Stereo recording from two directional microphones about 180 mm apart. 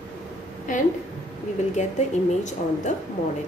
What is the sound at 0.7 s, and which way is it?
A woman's voice, 45° left (ahead or behind).